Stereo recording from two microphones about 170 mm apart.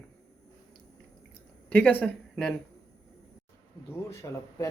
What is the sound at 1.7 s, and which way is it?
Speech, 10° left (ahead or behind).